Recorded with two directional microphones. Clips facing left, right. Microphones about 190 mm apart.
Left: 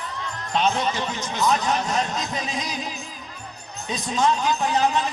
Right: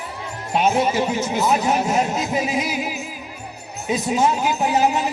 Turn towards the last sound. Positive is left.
turn(degrees=-10)  # may be behind; listen again after turning